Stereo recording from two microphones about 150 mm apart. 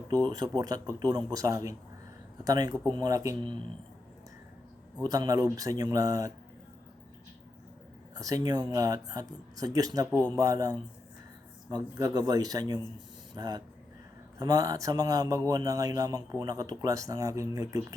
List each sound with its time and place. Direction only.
0.1 s a man's voice: 25° right (ahead or behind)
4.9 s a man's voice: 25° right (ahead or behind)
8.1 s a man's voice: 25° right (ahead or behind)